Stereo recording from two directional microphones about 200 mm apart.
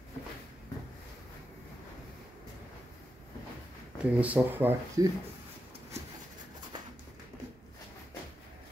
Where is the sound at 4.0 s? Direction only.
5° right (ahead or behind).